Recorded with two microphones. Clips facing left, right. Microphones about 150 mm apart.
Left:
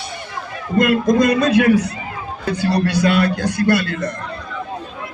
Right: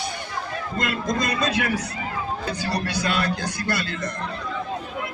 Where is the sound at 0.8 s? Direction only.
65° left (ahead or behind).